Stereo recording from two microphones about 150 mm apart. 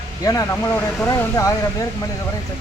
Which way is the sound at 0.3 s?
25° left (ahead or behind).